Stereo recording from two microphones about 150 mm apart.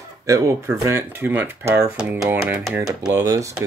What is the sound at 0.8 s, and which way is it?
Speech, 15° right (ahead or behind).